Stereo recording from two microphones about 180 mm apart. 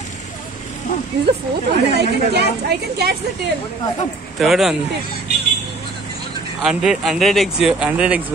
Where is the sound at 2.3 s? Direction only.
65° right (ahead or behind).